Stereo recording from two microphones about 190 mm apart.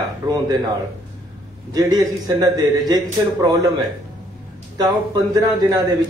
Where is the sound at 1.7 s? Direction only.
20° right (ahead or behind).